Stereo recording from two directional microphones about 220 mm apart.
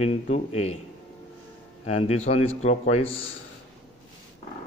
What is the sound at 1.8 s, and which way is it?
A man's voice, 30° left (ahead or behind).